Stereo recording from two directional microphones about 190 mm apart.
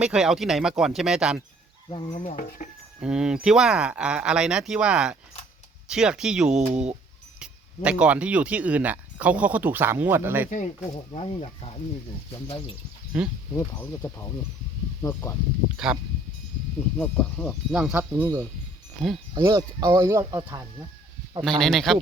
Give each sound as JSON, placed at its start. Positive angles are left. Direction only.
{"t": 0.0, "sound": "speech", "side_deg": -5}
{"t": 1.9, "sound": "stir", "side_deg": 25}
{"t": 2.1, "sound": "speech", "side_deg": 45}
{"t": 3.0, "sound": "speech", "side_deg": -5}
{"t": 6.5, "sound": "speech", "side_deg": -35}
{"t": 7.3, "sound": "speech", "side_deg": -5}
{"t": 10.5, "sound": "speech", "side_deg": 40}
{"t": 13.1, "sound": "speech", "side_deg": -5}
{"t": 13.5, "sound": "speech", "side_deg": 15}
{"t": 15.7, "sound": "speech", "side_deg": -5}
{"t": 17.0, "sound": "speech", "side_deg": 5}
{"t": 21.6, "sound": "speech", "side_deg": 0}